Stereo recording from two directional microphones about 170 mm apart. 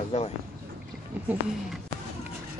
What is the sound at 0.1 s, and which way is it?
Speech, 40° left (ahead or behind).